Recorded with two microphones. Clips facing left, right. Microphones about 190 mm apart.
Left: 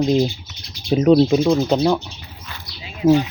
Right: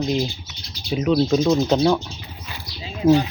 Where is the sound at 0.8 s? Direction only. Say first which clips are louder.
Left 6 dB; 45° left (ahead or behind).